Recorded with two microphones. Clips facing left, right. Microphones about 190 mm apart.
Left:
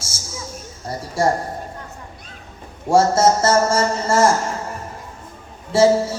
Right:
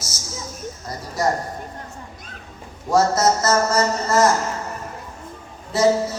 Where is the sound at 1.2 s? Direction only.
30° left (ahead or behind).